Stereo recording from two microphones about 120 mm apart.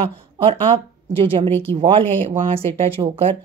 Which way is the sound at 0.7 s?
55° right (ahead or behind).